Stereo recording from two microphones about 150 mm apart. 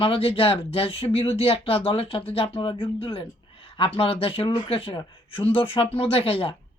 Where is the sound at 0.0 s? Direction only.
40° left (ahead or behind).